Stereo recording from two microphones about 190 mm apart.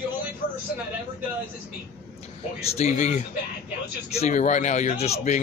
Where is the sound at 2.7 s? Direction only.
35° left (ahead or behind).